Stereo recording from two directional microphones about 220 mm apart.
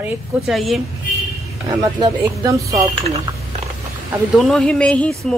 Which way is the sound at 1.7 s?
15° right (ahead or behind).